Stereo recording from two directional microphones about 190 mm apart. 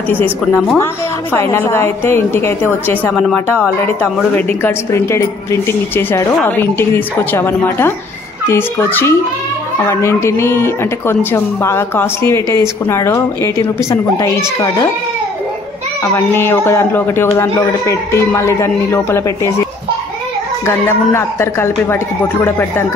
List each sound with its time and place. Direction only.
0.1 s a woman's voice: 10° left (ahead or behind)
16.0 s a woman's voice: 15° left (ahead or behind)
20.6 s a woman's voice: 15° left (ahead or behind)